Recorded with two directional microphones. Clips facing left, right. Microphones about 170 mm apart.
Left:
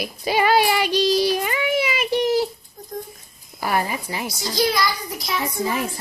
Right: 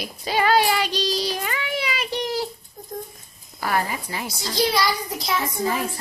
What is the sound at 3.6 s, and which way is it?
Speech, 15° left (ahead or behind).